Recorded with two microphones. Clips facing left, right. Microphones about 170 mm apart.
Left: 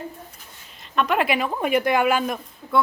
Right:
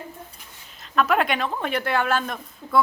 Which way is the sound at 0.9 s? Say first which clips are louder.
Even; centre (ahead or behind).